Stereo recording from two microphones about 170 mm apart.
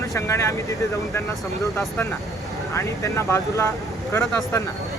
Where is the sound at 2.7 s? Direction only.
15° left (ahead or behind).